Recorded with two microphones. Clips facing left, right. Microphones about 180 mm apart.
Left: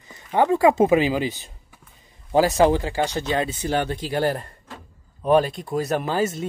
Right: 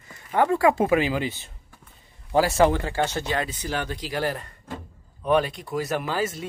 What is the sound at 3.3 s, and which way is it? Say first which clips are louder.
Speech: left 5 dB; 25° left (ahead or behind).